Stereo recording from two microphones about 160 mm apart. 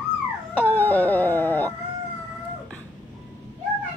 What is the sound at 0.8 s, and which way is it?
Dog, 10° left (ahead or behind).